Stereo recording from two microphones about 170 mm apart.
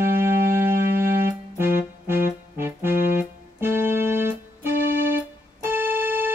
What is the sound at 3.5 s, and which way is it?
Keyboard, 15° right (ahead or behind).